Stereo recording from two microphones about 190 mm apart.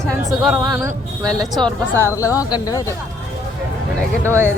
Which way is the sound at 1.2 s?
5° left (ahead or behind).